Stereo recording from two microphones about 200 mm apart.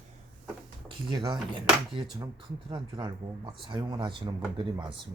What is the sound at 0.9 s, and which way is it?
Speech, 25° right (ahead or behind).